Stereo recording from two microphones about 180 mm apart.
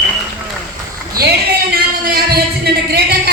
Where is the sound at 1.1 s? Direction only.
60° right (ahead or behind).